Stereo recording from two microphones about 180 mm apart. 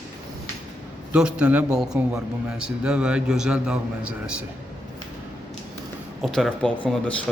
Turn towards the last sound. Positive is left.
turn(degrees=5)  # may be behind; listen again after turning